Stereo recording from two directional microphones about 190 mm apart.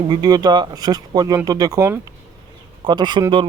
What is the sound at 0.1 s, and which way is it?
Speech, 20° right (ahead or behind).